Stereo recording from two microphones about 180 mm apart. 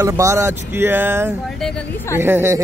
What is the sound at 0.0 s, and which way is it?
Speech, 15° right (ahead or behind).